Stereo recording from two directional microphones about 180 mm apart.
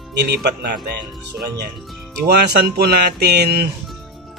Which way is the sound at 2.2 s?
60° right (ahead or behind).